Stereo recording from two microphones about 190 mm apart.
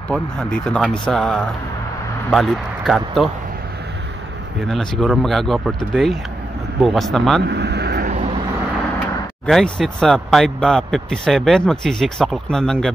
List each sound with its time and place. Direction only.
0.1 s speech: 5° left (ahead or behind)
4.6 s speech: centre (ahead or behind)
7.4 s vehicle: 65° right (ahead or behind)
9.5 s speech: centre (ahead or behind)